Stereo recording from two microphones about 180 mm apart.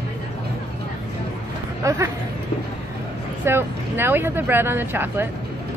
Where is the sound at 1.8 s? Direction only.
15° right (ahead or behind).